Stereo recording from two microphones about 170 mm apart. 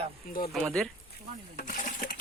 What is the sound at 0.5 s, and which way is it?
Speech, 5° left (ahead or behind).